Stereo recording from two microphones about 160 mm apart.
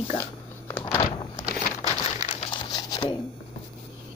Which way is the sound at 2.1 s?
50° left (ahead or behind).